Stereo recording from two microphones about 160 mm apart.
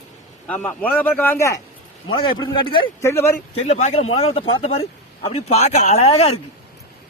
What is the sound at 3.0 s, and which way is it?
Speech, 15° left (ahead or behind).